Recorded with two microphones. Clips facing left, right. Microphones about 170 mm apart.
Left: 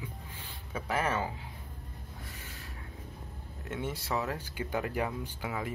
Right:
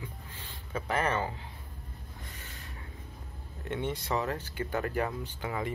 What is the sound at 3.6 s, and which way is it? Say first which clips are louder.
Speech: right 3 dB; 5° left (ahead or behind).